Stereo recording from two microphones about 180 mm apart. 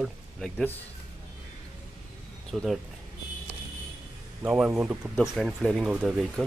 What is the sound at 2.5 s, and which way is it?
Speech, centre (ahead or behind).